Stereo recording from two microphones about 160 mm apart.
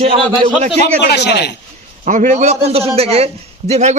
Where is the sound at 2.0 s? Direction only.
50° right (ahead or behind).